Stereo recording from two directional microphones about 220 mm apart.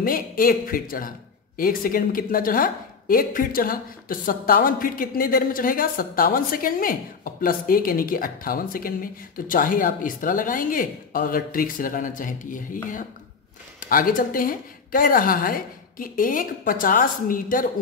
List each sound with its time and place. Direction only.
0.0 s a woman's voice: 40° left (ahead or behind)